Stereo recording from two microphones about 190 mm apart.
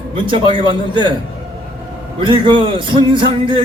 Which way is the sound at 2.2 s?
25° right (ahead or behind).